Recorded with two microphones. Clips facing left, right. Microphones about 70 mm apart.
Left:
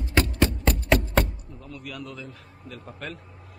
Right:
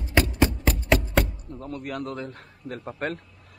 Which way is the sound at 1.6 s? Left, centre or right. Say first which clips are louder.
Right 6 dB; right.